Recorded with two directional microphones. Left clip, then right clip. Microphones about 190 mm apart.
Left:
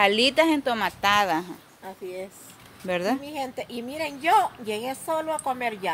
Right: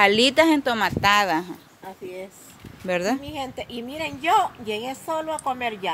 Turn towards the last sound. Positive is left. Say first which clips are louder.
# right 1 dB
turn(degrees=5)  # may be behind; listen again after turning